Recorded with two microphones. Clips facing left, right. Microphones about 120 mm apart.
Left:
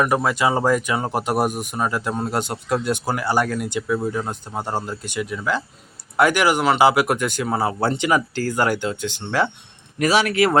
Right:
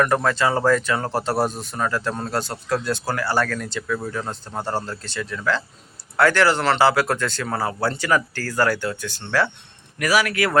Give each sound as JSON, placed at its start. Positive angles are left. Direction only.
{"t": 0.0, "sound": "a man's voice", "side_deg": 10}